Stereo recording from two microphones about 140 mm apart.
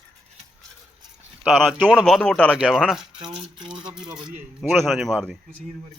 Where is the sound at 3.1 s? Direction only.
35° right (ahead or behind).